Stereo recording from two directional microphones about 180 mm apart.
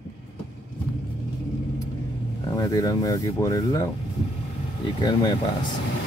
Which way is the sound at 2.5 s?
20° left (ahead or behind).